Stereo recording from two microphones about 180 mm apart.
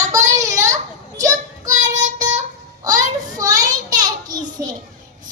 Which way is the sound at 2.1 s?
20° right (ahead or behind).